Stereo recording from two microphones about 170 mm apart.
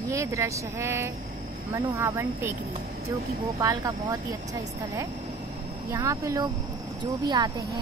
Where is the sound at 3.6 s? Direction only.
20° right (ahead or behind).